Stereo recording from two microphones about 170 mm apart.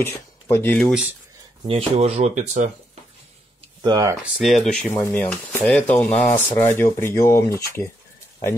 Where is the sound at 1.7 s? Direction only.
35° right (ahead or behind).